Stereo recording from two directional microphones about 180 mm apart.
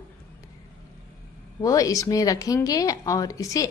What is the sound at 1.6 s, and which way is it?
A woman's voice, 20° left (ahead or behind).